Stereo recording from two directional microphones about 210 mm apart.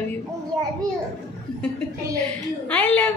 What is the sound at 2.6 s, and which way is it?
Speech, 5° left (ahead or behind).